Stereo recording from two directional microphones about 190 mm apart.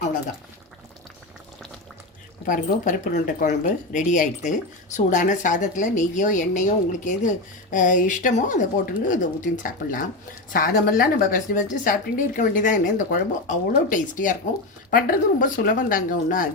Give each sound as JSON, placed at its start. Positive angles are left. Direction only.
{"t": 2.5, "sound": "a woman's voice", "side_deg": 40}